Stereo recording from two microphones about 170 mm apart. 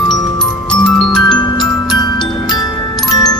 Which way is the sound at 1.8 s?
25° left (ahead or behind).